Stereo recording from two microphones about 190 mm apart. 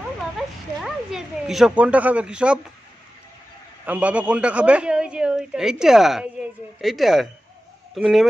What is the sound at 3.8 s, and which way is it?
A woman's voice, 5° right (ahead or behind).